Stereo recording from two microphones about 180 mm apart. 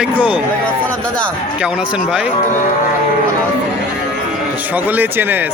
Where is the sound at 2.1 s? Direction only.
5° right (ahead or behind).